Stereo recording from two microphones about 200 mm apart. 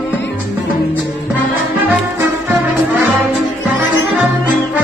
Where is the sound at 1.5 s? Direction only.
10° right (ahead or behind).